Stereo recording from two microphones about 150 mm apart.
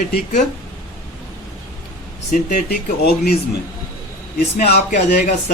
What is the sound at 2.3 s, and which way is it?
Speech, 60° left (ahead or behind).